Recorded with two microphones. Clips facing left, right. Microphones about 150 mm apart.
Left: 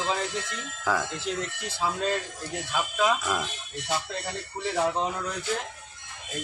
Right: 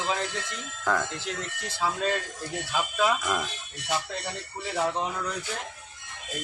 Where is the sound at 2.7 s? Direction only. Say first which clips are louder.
Even; centre (ahead or behind).